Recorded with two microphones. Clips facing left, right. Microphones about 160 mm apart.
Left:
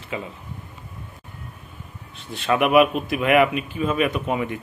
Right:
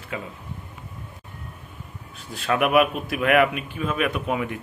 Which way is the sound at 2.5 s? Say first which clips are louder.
Left 3 dB; centre (ahead or behind).